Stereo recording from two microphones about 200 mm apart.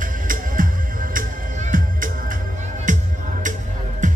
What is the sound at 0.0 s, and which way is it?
Music, 45° right (ahead or behind).